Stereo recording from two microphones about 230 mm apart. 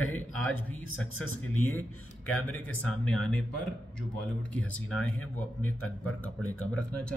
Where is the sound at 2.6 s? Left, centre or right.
Centre.